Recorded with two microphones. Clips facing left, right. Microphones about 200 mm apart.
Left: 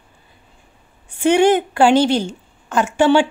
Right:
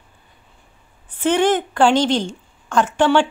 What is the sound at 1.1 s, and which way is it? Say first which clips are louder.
Speech: left 3 dB; 10° left (ahead or behind).